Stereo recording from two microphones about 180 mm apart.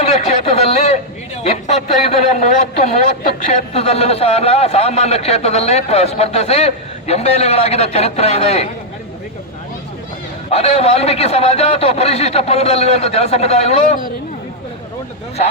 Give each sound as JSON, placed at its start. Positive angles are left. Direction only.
{"t": 0.0, "sound": "a sound", "side_deg": 35}
{"t": 1.5, "sound": "a man's voice", "side_deg": 35}
{"t": 10.5, "sound": "a man's voice", "side_deg": 35}